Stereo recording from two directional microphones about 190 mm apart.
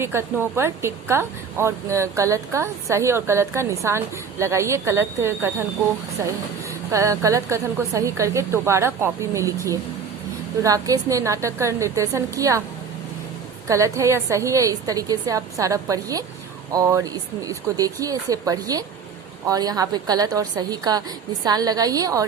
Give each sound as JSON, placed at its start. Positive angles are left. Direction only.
{"t": 0.0, "sound": "a woman's voice", "side_deg": -15}
{"t": 13.7, "sound": "a woman's voice", "side_deg": -15}